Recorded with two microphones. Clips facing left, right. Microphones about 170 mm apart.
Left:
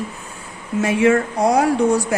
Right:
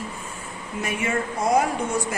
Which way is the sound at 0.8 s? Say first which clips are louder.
Left 11 dB; 75° left (ahead or behind).